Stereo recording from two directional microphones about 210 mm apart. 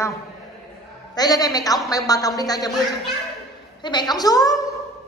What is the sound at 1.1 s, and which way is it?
A woman's voice, 20° left (ahead or behind).